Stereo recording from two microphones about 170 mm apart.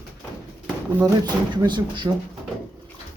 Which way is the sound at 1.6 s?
25° right (ahead or behind).